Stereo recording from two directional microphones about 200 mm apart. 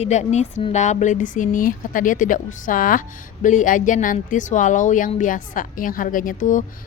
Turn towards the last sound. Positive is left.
turn(degrees=40)  # may be behind; listen again after turning